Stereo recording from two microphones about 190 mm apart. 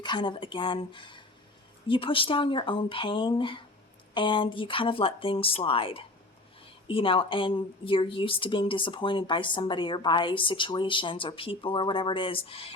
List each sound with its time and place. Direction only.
0.0 s speech: 25° left (ahead or behind)